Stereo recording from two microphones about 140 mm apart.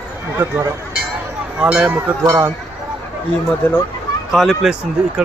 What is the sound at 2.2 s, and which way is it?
Speech, 20° right (ahead or behind).